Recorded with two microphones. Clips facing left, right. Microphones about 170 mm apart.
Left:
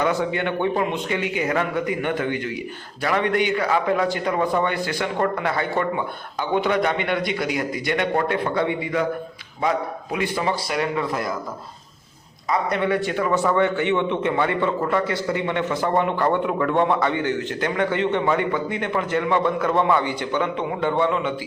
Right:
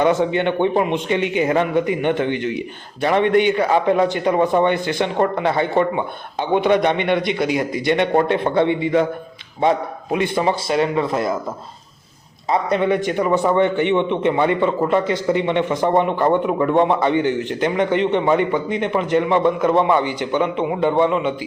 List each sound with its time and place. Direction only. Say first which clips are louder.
0.0 s a man's voice: right 5 dB; 20° right (ahead or behind)
12.5 s a man's voice: right 4 dB; 20° right (ahead or behind)